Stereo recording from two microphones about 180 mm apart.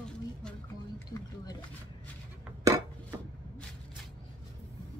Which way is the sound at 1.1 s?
20° left (ahead or behind).